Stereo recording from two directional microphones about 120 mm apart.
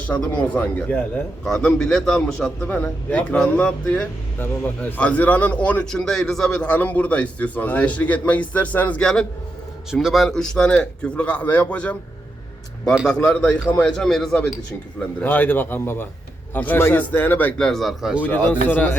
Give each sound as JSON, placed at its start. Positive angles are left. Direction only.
{"t": 0.5, "sound": "a man's voice", "side_deg": 10}
{"t": 12.8, "sound": "a man's voice", "side_deg": -5}
{"t": 13.4, "sound": "a man's voice", "side_deg": 5}
{"t": 15.2, "sound": "a man's voice", "side_deg": 15}
{"t": 17.7, "sound": "a man's voice", "side_deg": 0}
{"t": 18.2, "sound": "a man's voice", "side_deg": 15}